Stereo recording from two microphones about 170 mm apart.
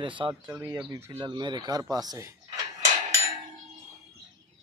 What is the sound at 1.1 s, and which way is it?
Speech, 25° right (ahead or behind).